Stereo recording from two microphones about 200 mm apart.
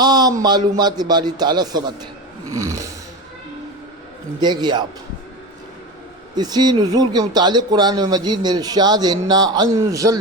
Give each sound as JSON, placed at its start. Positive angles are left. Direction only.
{"t": 0.0, "sound": "speech", "side_deg": -20}
{"t": 2.5, "sound": "snoring", "side_deg": -15}
{"t": 4.4, "sound": "speech", "side_deg": -20}
{"t": 6.3, "sound": "speech", "side_deg": -20}